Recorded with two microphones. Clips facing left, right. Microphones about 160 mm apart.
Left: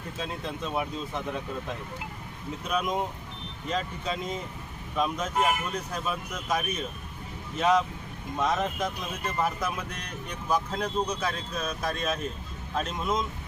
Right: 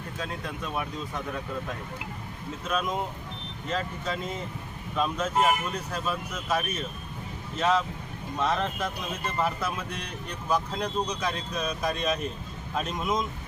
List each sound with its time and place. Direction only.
0.2 s speech: 20° left (ahead or behind)
2.6 s speech: 15° left (ahead or behind)